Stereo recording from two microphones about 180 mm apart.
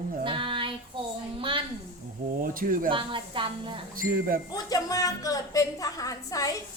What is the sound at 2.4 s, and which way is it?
Speech, 50° right (ahead or behind).